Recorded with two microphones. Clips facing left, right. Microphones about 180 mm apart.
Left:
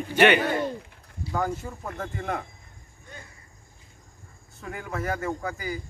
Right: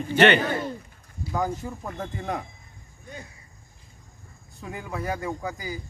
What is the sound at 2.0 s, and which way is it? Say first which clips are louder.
Speech: even; 15° right (ahead or behind).